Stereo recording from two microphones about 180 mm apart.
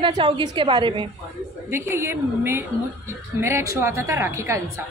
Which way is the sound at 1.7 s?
15° right (ahead or behind).